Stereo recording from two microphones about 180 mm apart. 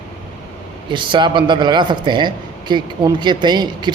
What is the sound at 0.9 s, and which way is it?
A man's voice, 25° right (ahead or behind).